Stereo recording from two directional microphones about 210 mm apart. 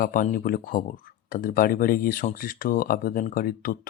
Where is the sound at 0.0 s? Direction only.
40° left (ahead or behind).